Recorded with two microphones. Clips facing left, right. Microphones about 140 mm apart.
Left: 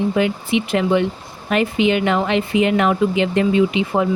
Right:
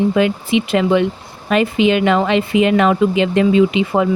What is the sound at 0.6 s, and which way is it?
Speech, 90° right.